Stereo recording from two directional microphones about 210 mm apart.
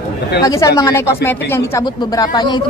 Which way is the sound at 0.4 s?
15° left (ahead or behind).